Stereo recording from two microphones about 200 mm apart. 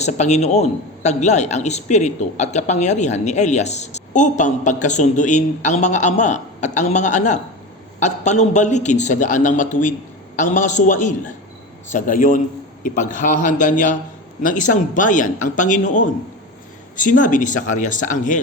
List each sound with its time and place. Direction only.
0.0 s a man's voice: 35° left (ahead or behind)